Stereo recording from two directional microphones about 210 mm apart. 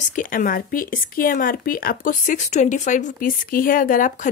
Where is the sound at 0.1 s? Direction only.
40° left (ahead or behind).